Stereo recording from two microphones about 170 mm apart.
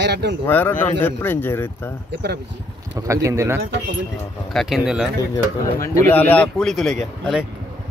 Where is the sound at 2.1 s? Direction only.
75° right (ahead or behind).